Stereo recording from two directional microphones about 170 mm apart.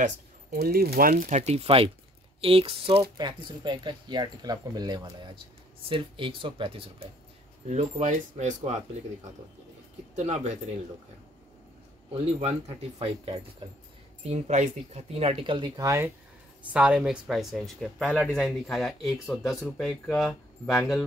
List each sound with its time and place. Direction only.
0.5 s speech: 65° right (ahead or behind)
1.4 s speech: 35° right (ahead or behind)
10.1 s speech: 40° right (ahead or behind)
12.1 s speech: 40° right (ahead or behind)
14.3 s speech: 45° right (ahead or behind); by 16.1 s 20° right (ahead or behind)
16.7 s speech: 5° right (ahead or behind)